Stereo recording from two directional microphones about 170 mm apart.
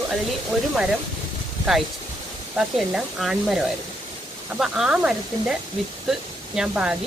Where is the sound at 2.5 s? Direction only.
Centre (ahead or behind).